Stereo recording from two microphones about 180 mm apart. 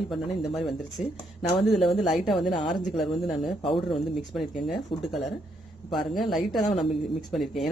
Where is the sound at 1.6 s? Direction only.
Centre (ahead or behind).